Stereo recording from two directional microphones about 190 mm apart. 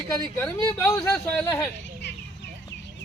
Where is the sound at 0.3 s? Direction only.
15° left (ahead or behind).